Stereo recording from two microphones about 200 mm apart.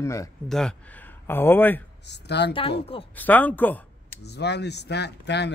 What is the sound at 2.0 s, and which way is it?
Speech, 60° left (ahead or behind).